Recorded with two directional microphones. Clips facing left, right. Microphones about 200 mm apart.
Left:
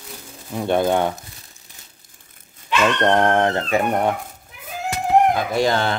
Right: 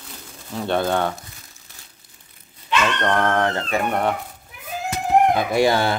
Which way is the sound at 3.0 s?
25° left (ahead or behind).